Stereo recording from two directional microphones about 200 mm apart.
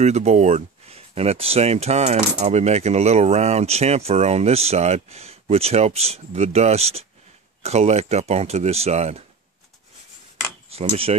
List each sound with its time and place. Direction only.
0.0 s speech: 35° right (ahead or behind)
10.7 s speech: 30° right (ahead or behind)